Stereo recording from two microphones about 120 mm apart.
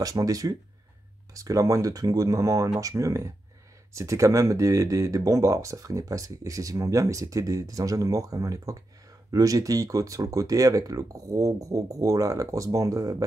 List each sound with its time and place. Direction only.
0.0 s speech: 30° right (ahead or behind)